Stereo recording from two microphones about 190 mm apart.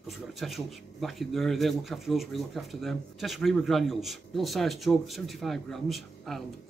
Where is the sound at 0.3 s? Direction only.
Centre (ahead or behind).